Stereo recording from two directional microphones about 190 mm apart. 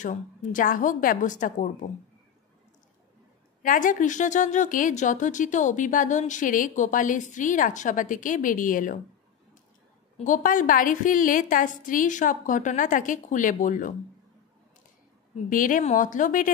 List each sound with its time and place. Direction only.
0.0 s speech: 45° left (ahead or behind)
3.6 s speech: 45° left (ahead or behind)
10.1 s speech: 45° left (ahead or behind)
15.5 s speech: 45° left (ahead or behind)